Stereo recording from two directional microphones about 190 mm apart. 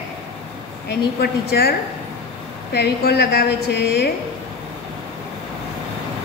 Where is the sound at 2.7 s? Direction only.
60° left (ahead or behind).